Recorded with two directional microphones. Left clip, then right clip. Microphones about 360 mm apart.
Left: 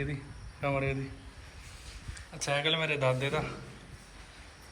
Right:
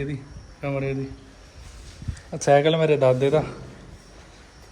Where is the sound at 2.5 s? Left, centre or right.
Centre.